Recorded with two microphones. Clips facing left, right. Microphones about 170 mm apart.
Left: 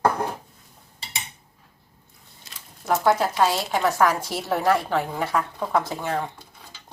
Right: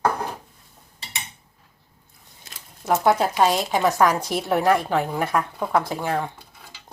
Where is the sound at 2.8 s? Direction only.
15° right (ahead or behind).